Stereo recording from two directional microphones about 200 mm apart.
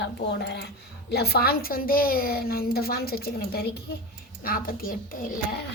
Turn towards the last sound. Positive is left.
turn(degrees=45)  # may be behind; listen again after turning